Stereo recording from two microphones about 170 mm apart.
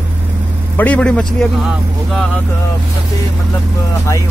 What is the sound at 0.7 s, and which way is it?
A man's voice, 10° left (ahead or behind).